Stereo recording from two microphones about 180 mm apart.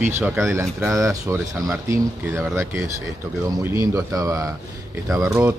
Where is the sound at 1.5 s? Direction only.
5° right (ahead or behind).